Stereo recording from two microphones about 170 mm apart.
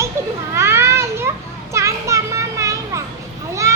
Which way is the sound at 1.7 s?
15° right (ahead or behind).